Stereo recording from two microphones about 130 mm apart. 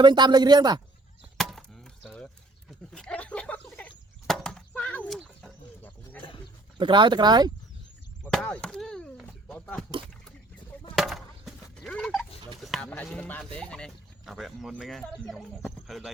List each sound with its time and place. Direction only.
0.0 s speech: 35° right (ahead or behind)
1.4 s chop: centre (ahead or behind)
4.3 s neigh: 5° left (ahead or behind)
6.7 s speech: 40° right (ahead or behind)
8.2 s chop: 10° left (ahead or behind)
10.9 s a sound: centre (ahead or behind)
13.1 s speech: 10° left (ahead or behind)